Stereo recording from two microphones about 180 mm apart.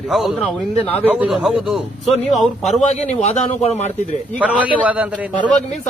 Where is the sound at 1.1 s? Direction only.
5° right (ahead or behind).